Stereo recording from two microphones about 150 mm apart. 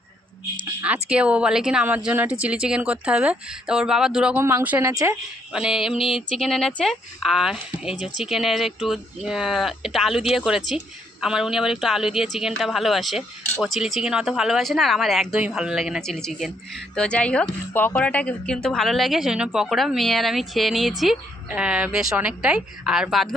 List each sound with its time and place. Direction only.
0.8 s speech: 10° right (ahead or behind); by 5.1 s 25° right (ahead or behind)
5.5 s speech: 5° right (ahead or behind)
5.9 s a sound: 35° left (ahead or behind)
6.3 s speech: centre (ahead or behind)